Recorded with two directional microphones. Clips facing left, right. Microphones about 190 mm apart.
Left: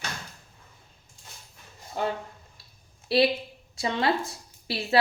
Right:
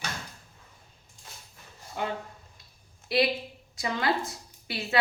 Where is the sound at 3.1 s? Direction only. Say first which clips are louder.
Left 3 dB; 30° left (ahead or behind).